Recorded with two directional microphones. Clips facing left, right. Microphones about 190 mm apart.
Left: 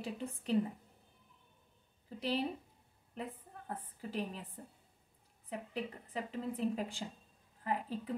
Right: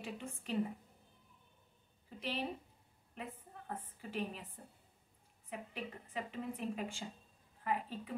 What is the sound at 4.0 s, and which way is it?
A woman's voice, 35° left (ahead or behind).